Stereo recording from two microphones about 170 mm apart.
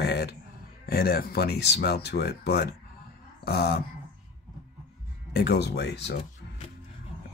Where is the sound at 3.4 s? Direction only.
65° left (ahead or behind).